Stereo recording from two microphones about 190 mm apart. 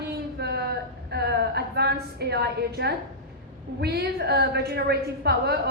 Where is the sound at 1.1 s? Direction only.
60° right (ahead or behind).